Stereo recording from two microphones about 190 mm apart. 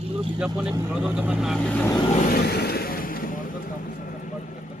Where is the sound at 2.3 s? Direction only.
55° left (ahead or behind).